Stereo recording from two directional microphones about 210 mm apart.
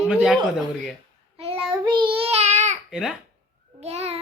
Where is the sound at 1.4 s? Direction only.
25° right (ahead or behind).